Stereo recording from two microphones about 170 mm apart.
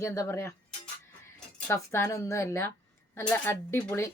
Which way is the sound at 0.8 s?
15° left (ahead or behind).